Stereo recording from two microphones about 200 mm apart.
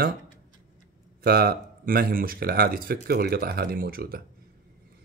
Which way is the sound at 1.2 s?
50° right (ahead or behind).